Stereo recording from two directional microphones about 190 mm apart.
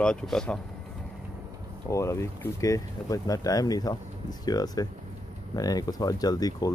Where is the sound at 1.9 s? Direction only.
15° left (ahead or behind).